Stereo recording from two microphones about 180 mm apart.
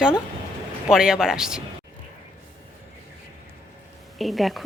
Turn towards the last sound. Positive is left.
turn(degrees=0)  # may be behind; listen again after turning